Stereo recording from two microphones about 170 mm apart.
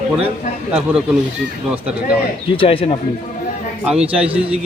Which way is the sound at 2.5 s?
30° left (ahead or behind).